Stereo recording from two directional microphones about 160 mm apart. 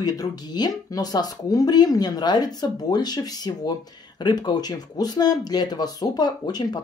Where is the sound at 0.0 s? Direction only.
25° left (ahead or behind).